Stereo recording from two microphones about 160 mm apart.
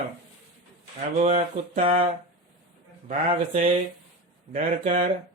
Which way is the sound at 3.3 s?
40° right (ahead or behind).